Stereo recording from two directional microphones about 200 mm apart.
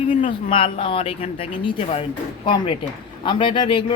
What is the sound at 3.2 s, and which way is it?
Speech, 25° left (ahead or behind).